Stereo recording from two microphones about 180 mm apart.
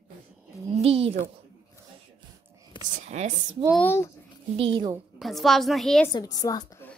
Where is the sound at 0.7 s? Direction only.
35° right (ahead or behind).